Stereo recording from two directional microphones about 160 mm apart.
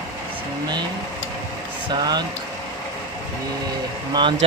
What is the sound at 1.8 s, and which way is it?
Speech, 25° right (ahead or behind).